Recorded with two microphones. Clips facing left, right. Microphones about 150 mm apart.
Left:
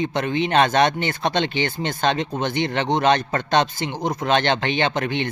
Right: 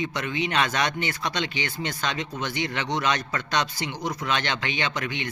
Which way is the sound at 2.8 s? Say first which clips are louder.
Left 9 dB; 50° left (ahead or behind).